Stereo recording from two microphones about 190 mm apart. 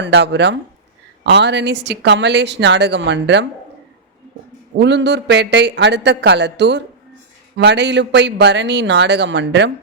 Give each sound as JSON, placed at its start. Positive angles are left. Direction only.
{"t": 0.0, "sound": "speech", "side_deg": -65}
{"t": 4.8, "sound": "speech", "side_deg": -65}